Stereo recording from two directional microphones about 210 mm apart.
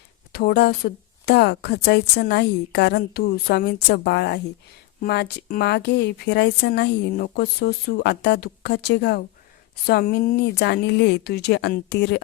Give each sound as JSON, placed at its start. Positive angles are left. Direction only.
{"t": 0.3, "sound": "speech", "side_deg": 50}